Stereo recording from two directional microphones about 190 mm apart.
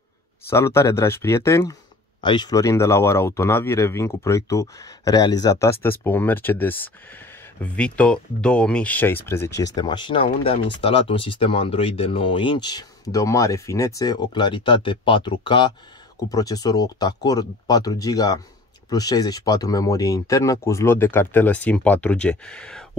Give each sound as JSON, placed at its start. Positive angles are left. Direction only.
{"t": 0.5, "sound": "speech", "side_deg": 15}
{"t": 9.8, "sound": "speech", "side_deg": 25}